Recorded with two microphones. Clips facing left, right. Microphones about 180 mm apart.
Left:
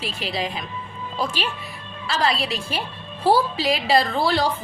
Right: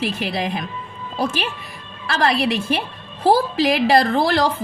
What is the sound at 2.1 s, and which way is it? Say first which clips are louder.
A woman's voice: right 4 dB; 55° right (ahead or behind).